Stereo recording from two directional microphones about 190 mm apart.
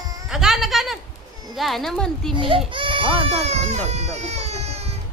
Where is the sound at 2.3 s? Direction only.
25° right (ahead or behind).